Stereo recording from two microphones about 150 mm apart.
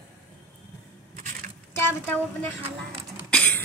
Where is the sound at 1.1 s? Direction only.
60° right (ahead or behind).